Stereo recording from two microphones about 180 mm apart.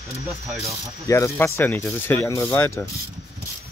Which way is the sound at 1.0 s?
15° left (ahead or behind).